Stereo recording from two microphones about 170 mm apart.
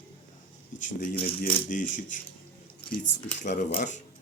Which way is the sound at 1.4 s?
50° left (ahead or behind).